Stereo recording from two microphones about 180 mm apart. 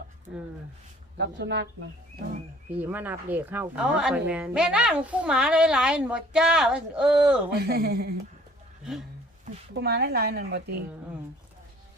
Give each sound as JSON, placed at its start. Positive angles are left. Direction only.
{"t": 1.4, "sound": "speech", "side_deg": -80}
{"t": 2.7, "sound": "a woman's voice", "side_deg": -10}
{"t": 7.5, "sound": "a woman's voice", "side_deg": -60}
{"t": 9.8, "sound": "a woman's voice", "side_deg": -60}